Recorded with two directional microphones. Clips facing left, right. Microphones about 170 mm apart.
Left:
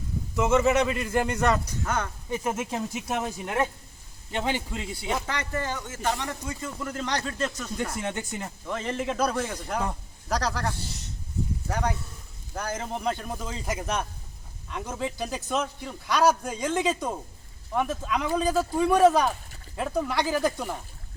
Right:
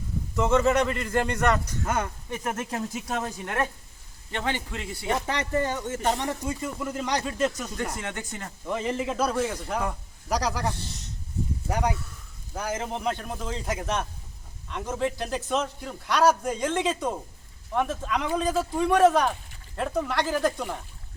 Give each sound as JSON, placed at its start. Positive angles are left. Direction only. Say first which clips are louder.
{"t": 0.3, "sound": "a man's voice", "louder": "even", "side_deg": 5}
{"t": 2.9, "sound": "a man's voice", "louder": "left 1 dB", "side_deg": 5}
{"t": 5.2, "sound": "speech", "louder": "right 4 dB", "side_deg": -25}
{"t": 8.0, "sound": "a man's voice", "louder": "left 3 dB", "side_deg": 15}
{"t": 8.6, "sound": "a man's voice", "louder": "right 2 dB", "side_deg": -10}